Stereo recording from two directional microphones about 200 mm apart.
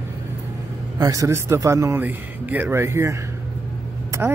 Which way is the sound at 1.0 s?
15° right (ahead or behind).